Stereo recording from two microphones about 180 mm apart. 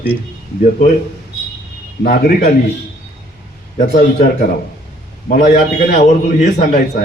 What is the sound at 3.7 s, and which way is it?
Speech, 50° left (ahead or behind).